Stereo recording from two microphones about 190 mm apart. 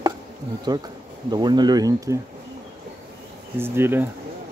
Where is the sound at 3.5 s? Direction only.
10° right (ahead or behind).